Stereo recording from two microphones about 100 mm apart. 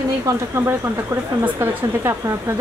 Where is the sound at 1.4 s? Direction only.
25° right (ahead or behind).